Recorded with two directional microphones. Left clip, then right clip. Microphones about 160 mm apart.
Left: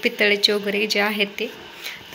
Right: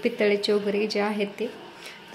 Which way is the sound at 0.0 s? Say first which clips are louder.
Left 5 dB; 10° right (ahead or behind).